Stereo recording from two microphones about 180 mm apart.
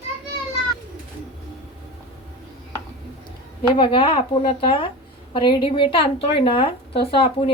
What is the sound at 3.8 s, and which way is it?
Speech, 30° left (ahead or behind).